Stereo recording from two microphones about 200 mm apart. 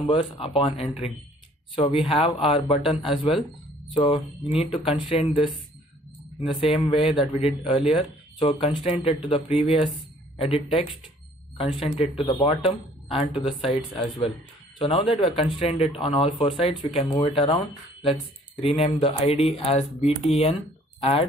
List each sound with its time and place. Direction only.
0.0 s speech: 25° left (ahead or behind)
3.1 s speech: centre (ahead or behind)
3.9 s speech: 25° left (ahead or behind)
6.9 s speech: 25° left (ahead or behind)
7.7 s speech: centre (ahead or behind)
8.4 s speech: 30° left (ahead or behind)
18.6 s speech: 30° left (ahead or behind)